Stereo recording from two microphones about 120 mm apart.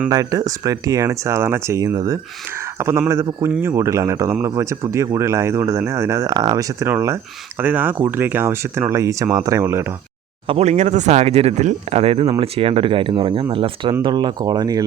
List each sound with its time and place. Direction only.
0.1 s speech: 30° right (ahead or behind)
10.4 s speech: 55° right (ahead or behind); by 14.8 s 35° right (ahead or behind)